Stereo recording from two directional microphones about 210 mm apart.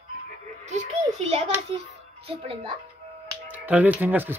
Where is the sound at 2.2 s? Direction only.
25° right (ahead or behind).